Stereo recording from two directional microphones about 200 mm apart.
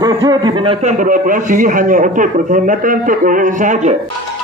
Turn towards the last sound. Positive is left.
turn(degrees=-35)  # may be behind; listen again after turning